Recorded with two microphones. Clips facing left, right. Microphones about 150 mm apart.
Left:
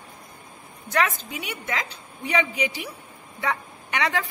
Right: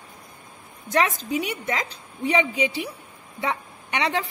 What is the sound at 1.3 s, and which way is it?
A woman's voice, 35° right (ahead or behind).